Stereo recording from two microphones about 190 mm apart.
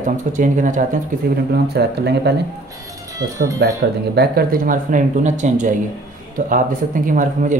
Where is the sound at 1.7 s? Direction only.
60° right (ahead or behind).